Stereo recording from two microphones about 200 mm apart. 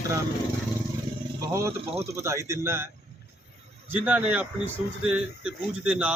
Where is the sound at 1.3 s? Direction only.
15° right (ahead or behind).